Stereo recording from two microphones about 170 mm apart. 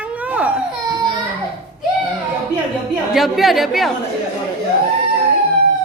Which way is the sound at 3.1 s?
Centre (ahead or behind).